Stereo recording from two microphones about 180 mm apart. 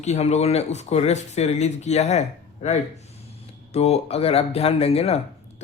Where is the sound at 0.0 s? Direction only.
40° left (ahead or behind).